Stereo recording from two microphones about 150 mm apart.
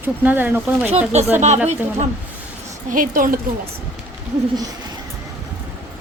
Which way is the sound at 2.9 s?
65° right (ahead or behind).